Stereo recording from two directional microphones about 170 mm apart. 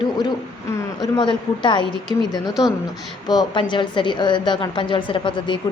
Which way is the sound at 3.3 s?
25° left (ahead or behind).